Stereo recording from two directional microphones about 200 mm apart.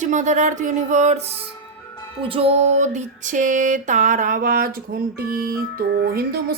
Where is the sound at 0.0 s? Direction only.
35° right (ahead or behind).